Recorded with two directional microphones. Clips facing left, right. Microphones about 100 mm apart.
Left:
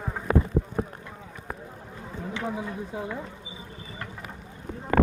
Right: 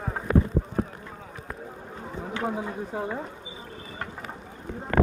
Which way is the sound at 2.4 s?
30° right (ahead or behind).